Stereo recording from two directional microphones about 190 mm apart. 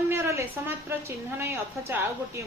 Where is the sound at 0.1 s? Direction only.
15° right (ahead or behind).